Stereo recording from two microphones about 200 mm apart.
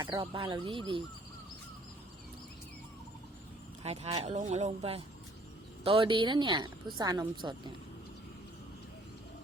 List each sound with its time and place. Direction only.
0.0 s speech: 25° right (ahead or behind)
3.8 s speech: 35° right (ahead or behind)